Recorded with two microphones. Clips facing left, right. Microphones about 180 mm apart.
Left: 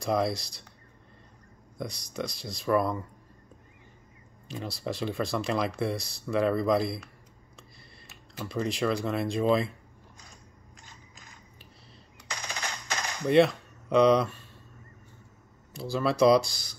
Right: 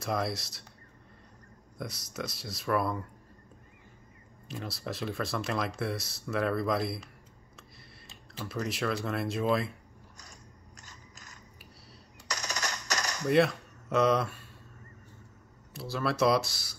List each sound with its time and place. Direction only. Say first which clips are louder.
0.0 s speech: left 5 dB; centre (ahead or behind)
1.8 s speech: left 3 dB; 5° right (ahead or behind)
4.5 s speech: left 3 dB; centre (ahead or behind)
8.5 s speech: left 4 dB; 5° right (ahead or behind)
10.8 s mechanisms: left 1 dB; 40° right (ahead or behind)
12.3 s machine gun: right 1 dB; 40° right (ahead or behind)
13.3 s speech: left 4 dB; centre (ahead or behind)
15.7 s speech: left 4 dB; centre (ahead or behind)